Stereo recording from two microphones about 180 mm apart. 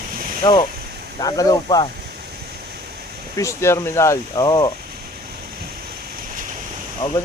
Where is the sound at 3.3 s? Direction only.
15° left (ahead or behind).